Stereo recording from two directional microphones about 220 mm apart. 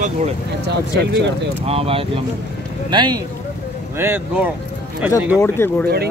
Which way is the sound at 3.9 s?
10° right (ahead or behind).